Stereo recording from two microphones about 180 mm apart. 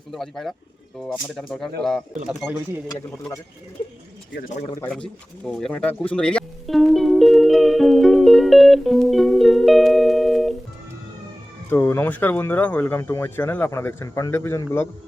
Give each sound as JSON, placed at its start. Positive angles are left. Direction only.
{"t": 0.1, "sound": "speech", "side_deg": 0}
{"t": 2.9, "sound": "a man's voice", "side_deg": 20}
{"t": 4.4, "sound": "a man's voice", "side_deg": 45}
{"t": 4.8, "sound": "speech", "side_deg": 5}
{"t": 5.5, "sound": "music", "side_deg": 5}
{"t": 11.7, "sound": "speech", "side_deg": 10}